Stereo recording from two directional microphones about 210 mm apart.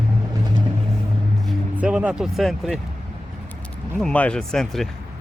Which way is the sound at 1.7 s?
5° right (ahead or behind).